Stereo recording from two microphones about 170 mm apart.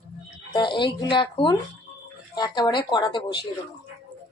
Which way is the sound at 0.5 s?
30° left (ahead or behind).